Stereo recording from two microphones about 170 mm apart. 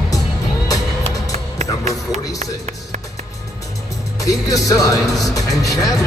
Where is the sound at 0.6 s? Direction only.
20° left (ahead or behind).